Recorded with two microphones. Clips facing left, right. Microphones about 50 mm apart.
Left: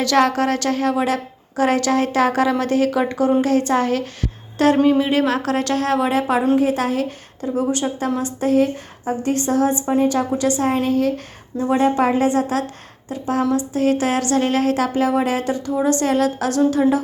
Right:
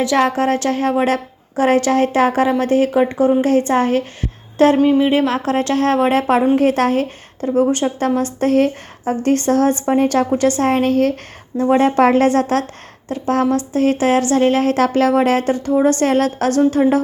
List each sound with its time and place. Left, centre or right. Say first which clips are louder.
0.0 s speech: right 1 dB; centre
0.3 s speech: right 2 dB; right
4.5 s a sound: right 4 dB; right
4.8 s speech: right 2 dB; centre
5.1 s a woman's voice: right 2 dB; right